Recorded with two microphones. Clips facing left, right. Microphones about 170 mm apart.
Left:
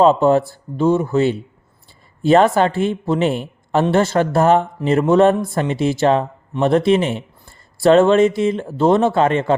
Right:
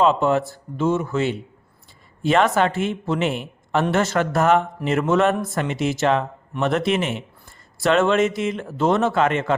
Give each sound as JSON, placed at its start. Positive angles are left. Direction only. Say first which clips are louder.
{"t": 0.0, "sound": "a man's voice", "louder": "left 5 dB", "side_deg": 35}